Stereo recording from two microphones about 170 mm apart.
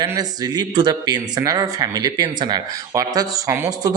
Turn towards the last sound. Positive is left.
turn(degrees=-20)  # may be behind; listen again after turning